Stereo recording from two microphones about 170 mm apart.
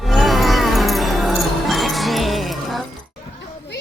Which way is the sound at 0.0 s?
Centre (ahead or behind).